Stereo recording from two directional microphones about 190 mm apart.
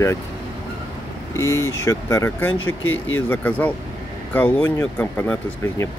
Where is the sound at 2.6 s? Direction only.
90° left.